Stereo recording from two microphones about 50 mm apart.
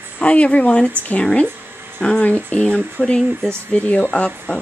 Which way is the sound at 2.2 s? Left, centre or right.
Left.